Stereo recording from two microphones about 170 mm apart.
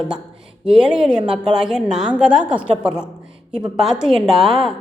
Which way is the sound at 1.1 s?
30° right (ahead or behind).